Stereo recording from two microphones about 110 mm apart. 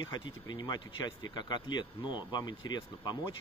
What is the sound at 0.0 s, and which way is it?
Speech, 40° left (ahead or behind).